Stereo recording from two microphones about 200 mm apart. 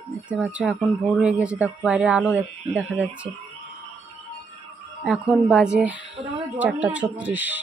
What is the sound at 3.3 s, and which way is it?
Speech, 25° right (ahead or behind).